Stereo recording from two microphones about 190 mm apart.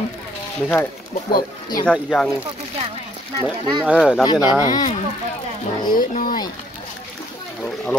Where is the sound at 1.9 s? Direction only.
Centre (ahead or behind).